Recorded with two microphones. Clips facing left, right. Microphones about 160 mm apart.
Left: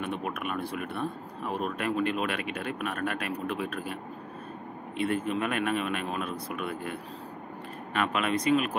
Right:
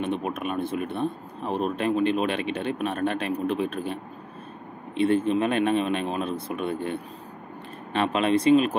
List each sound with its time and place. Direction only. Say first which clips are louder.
0.0 s speech: right 5 dB; 20° right (ahead or behind)